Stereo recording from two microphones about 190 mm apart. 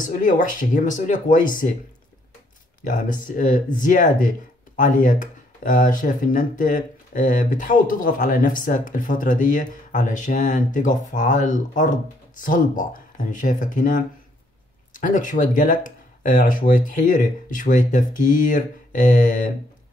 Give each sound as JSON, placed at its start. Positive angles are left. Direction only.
{"t": 0.0, "sound": "speech", "side_deg": 45}
{"t": 2.8, "sound": "speech", "side_deg": 45}